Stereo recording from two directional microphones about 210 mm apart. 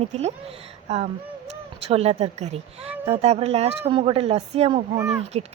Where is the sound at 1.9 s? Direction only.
30° right (ahead or behind).